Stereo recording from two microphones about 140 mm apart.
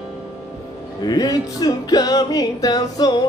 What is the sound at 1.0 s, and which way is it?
Music, 25° left (ahead or behind).